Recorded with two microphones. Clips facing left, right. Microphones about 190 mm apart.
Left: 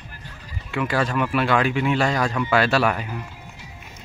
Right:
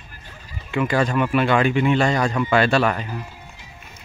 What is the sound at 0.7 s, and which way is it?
Speech, centre (ahead or behind).